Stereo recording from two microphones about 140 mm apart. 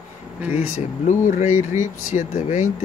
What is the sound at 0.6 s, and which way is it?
Speech, 55° left (ahead or behind).